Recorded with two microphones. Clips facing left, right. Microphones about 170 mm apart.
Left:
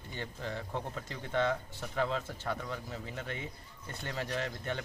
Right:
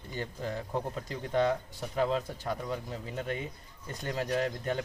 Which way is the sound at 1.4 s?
15° right (ahead or behind).